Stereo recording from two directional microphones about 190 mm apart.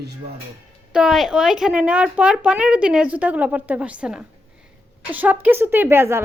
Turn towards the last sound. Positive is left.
turn(degrees=-15)  # may be behind; listen again after turning